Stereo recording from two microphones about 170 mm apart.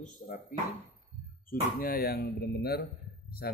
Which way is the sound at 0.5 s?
55° left (ahead or behind).